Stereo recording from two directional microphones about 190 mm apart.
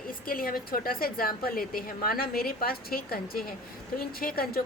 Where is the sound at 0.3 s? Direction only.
50° left (ahead or behind).